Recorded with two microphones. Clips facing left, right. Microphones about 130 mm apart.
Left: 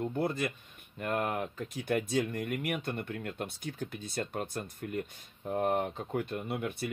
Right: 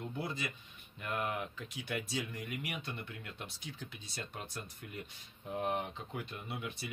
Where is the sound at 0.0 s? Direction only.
50° left (ahead or behind).